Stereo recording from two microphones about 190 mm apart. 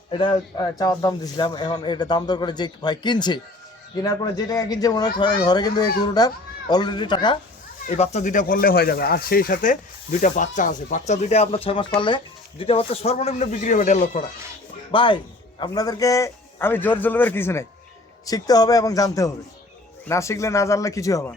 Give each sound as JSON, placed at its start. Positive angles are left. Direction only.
{"t": 0.1, "sound": "speech", "side_deg": 25}
{"t": 7.9, "sound": "speech", "side_deg": 35}
{"t": 14.9, "sound": "a man's voice", "side_deg": 25}